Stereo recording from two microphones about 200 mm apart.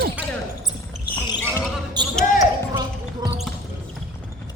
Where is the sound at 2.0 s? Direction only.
20° right (ahead or behind).